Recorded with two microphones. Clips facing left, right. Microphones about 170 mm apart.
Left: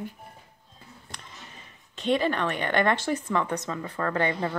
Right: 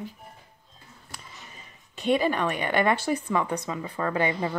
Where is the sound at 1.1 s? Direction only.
5° right (ahead or behind).